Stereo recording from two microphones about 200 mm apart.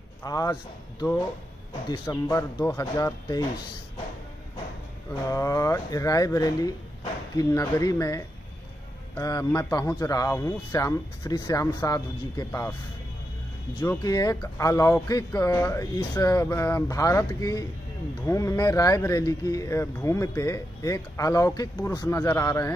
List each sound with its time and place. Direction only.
0.2 s speech: 20° left (ahead or behind)
5.3 s speech: 15° left (ahead or behind)
9.2 s speech: 15° left (ahead or behind)
13.7 s speech: 20° left (ahead or behind)